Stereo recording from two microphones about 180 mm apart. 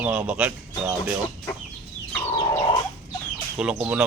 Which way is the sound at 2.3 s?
20° left (ahead or behind).